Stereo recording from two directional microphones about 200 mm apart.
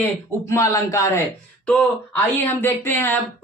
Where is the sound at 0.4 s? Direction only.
15° left (ahead or behind).